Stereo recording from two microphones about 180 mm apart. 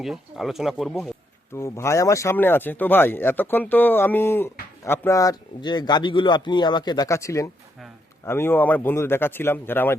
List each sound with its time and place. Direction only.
0.0 s speech: centre (ahead or behind)
1.5 s a man's voice: 15° left (ahead or behind)